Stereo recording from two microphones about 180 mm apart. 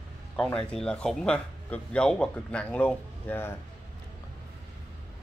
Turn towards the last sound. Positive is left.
turn(degrees=10)  # may be behind; listen again after turning